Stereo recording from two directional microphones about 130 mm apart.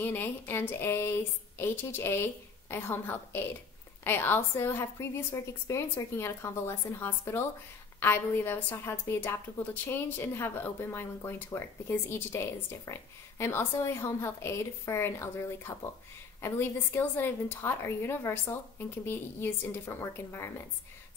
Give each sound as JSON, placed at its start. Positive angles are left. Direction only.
{"t": 0.0, "sound": "a woman's voice", "side_deg": 15}